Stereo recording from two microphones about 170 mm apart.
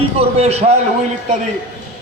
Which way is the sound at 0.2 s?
40° right (ahead or behind).